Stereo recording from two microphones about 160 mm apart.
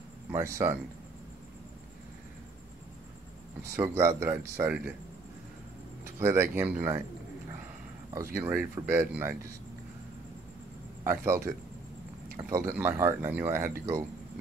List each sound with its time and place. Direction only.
0.3 s speech: 15° right (ahead or behind)
3.6 s speech: 15° right (ahead or behind)
6.1 s speech: 15° right (ahead or behind)
8.1 s speech: 15° right (ahead or behind)
11.1 s speech: 15° right (ahead or behind)